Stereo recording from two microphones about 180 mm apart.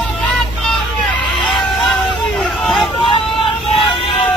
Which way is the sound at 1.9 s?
Centre (ahead or behind).